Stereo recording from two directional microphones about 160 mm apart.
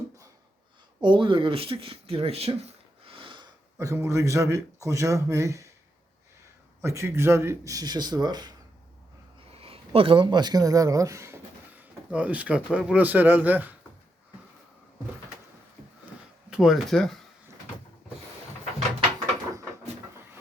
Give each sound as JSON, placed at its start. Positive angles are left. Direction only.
{"t": 1.0, "sound": "speech", "side_deg": -30}
{"t": 3.8, "sound": "a man's voice", "side_deg": -20}
{"t": 6.8, "sound": "a man's voice", "side_deg": -15}
{"t": 9.5, "sound": "speech", "side_deg": -35}
{"t": 16.5, "sound": "speech", "side_deg": -5}